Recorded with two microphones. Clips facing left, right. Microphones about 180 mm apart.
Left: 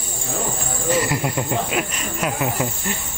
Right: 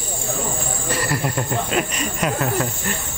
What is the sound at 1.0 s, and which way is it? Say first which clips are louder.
Speech: right 1 dB; 15° left (ahead or behind).